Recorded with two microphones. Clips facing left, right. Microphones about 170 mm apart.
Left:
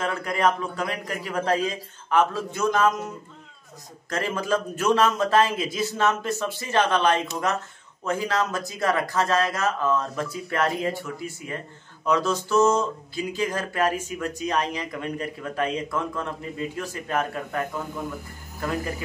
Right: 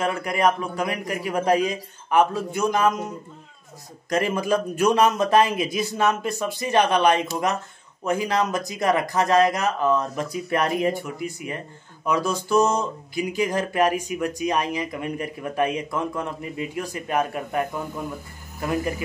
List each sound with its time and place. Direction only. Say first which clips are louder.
0.0 s speech: right 2 dB; 15° right (ahead or behind)
4.1 s speech: right 3 dB; 15° right (ahead or behind)